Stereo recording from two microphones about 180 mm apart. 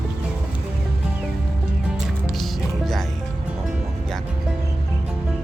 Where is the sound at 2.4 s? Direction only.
Centre (ahead or behind).